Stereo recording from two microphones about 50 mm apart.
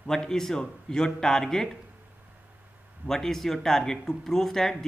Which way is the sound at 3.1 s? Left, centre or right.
Centre.